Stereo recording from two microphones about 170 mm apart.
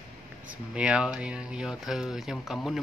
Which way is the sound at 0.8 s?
5° right (ahead or behind).